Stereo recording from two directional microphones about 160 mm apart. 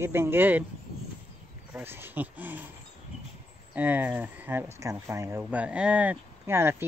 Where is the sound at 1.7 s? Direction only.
15° right (ahead or behind).